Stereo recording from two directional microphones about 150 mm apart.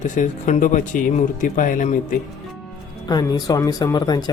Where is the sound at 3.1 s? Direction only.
25° left (ahead or behind).